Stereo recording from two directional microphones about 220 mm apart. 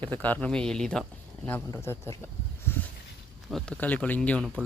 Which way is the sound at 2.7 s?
10° left (ahead or behind).